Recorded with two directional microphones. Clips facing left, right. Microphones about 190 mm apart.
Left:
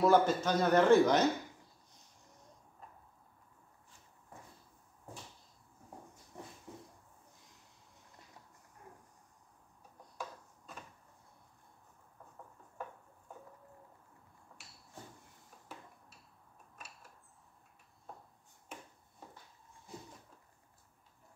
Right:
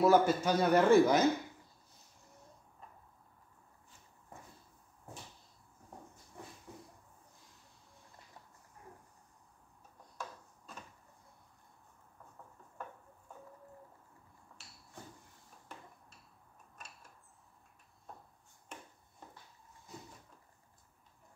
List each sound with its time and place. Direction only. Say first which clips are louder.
0.0 s a man's voice: right 1 dB; 10° right (ahead or behind)